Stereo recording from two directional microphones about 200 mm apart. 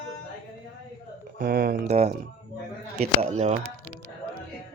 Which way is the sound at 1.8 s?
35° right (ahead or behind).